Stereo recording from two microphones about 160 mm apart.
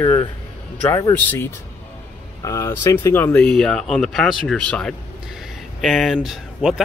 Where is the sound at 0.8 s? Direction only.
15° left (ahead or behind).